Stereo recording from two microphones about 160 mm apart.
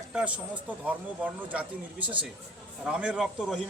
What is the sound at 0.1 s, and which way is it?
A man's voice, 5° right (ahead or behind).